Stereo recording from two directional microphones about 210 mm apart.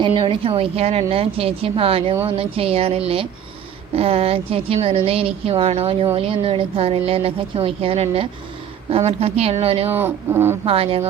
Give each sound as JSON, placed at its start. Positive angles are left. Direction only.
{"t": 0.0, "sound": "speech", "side_deg": -25}
{"t": 9.9, "sound": "speech", "side_deg": -10}
{"t": 10.7, "sound": "speech", "side_deg": -25}